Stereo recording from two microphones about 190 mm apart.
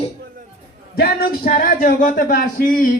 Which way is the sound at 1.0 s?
50° left (ahead or behind).